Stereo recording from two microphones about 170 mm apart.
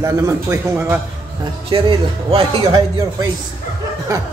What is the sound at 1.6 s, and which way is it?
Speech, 30° right (ahead or behind).